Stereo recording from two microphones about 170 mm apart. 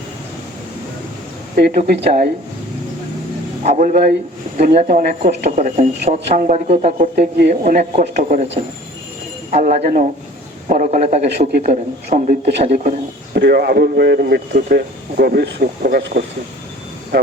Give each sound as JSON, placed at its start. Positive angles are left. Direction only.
{"t": 1.5, "sound": "speech", "side_deg": -60}
{"t": 3.6, "sound": "speech", "side_deg": -45}
{"t": 5.2, "sound": "speech", "side_deg": -40}
{"t": 9.5, "sound": "speech", "side_deg": -45}
{"t": 13.3, "sound": "a man's voice", "side_deg": -75}